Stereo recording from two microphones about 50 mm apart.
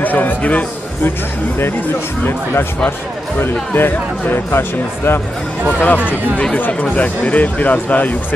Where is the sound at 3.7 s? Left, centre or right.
Left.